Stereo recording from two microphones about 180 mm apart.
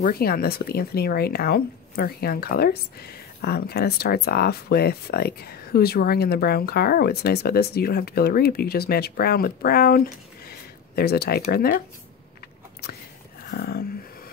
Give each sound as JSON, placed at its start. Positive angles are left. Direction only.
{"t": 0.0, "sound": "speech", "side_deg": 55}
{"t": 13.5, "sound": "speech", "side_deg": 65}